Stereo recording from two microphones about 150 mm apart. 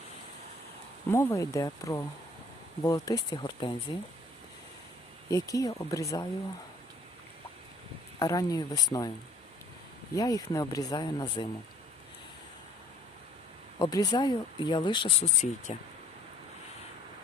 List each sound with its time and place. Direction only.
1.1 s speech: 20° left (ahead or behind)
5.3 s speech: 20° left (ahead or behind)
8.2 s speech: 25° left (ahead or behind)
10.2 s speech: 25° left (ahead or behind)
13.7 s speech: 25° left (ahead or behind)
15.2 s speech: 55° left (ahead or behind)